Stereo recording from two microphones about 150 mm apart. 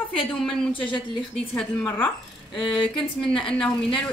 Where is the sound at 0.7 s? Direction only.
35° left (ahead or behind).